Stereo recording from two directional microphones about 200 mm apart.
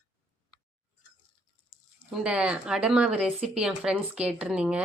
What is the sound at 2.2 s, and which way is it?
Speech, 5° right (ahead or behind).